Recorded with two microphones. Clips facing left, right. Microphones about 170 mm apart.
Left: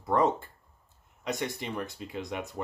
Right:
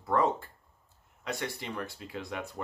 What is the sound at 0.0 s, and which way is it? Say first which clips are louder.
Speech: left 2 dB; 20° left (ahead or behind).